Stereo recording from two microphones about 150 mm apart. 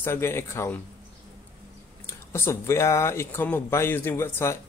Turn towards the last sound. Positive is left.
turn(degrees=15)  # may be behind; listen again after turning